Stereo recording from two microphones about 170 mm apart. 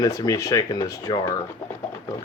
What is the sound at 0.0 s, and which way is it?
Speech, 20° left (ahead or behind).